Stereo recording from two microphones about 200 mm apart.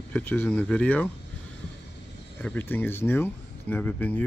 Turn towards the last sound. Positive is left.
turn(degrees=10)  # may be behind; listen again after turning